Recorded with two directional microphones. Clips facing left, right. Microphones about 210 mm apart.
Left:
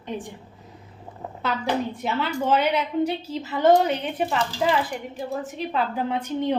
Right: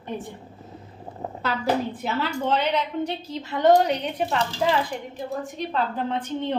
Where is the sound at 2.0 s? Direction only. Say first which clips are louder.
Left 1 dB; centre (ahead or behind).